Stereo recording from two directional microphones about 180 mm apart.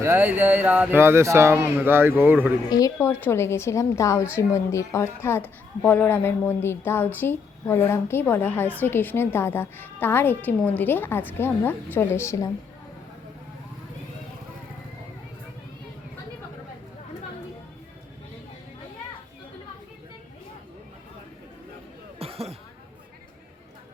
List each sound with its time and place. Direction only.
0.0 s speech: 10° right (ahead or behind)
2.6 s a woman's voice: 20° left (ahead or behind)
22.2 s a sound: 35° right (ahead or behind)